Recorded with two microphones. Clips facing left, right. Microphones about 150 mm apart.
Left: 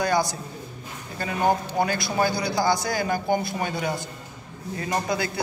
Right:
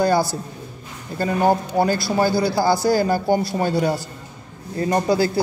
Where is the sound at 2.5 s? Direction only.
35° right (ahead or behind).